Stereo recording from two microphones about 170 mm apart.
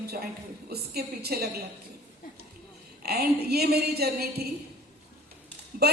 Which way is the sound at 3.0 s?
70° right (ahead or behind).